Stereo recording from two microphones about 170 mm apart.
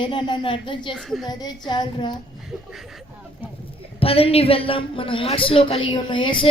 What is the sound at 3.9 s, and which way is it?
A woman's voice, 35° left (ahead or behind).